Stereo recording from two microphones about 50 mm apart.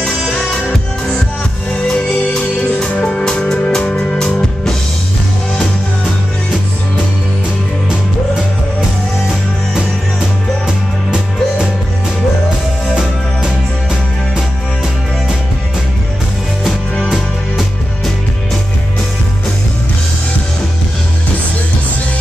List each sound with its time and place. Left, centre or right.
3.0 s music: centre
17.1 s music: centre